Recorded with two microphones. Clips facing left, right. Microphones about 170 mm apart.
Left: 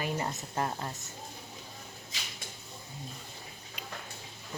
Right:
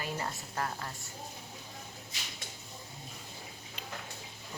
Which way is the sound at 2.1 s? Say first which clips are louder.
Left 3 dB; 90° left.